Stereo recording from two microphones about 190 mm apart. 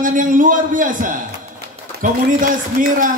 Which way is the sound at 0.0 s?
45° right (ahead or behind).